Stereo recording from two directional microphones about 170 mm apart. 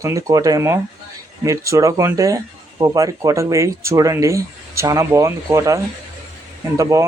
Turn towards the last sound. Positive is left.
turn(degrees=-20)  # may be behind; listen again after turning